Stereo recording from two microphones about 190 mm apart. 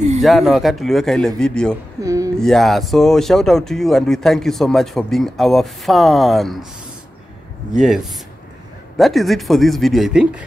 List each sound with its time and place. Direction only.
0.2 s speech: centre (ahead or behind)
2.0 s a sound: 15° right (ahead or behind)
2.3 s speech: centre (ahead or behind)
7.7 s speech: centre (ahead or behind)